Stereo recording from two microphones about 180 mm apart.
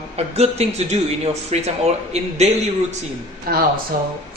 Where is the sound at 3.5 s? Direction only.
55° right (ahead or behind).